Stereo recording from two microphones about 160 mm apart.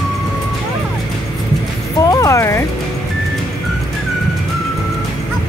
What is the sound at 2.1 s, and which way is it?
Speech, 20° left (ahead or behind).